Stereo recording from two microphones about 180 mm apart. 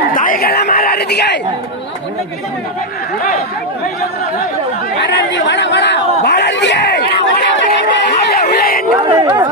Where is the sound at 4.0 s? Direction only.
60° left (ahead or behind).